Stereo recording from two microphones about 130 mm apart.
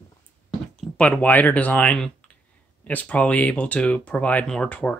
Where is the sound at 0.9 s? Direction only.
10° left (ahead or behind).